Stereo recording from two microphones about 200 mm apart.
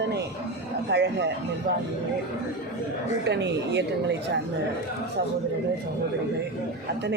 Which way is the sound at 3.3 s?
60° right (ahead or behind).